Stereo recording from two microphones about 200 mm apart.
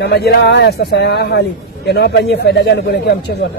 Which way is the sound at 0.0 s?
55° left (ahead or behind).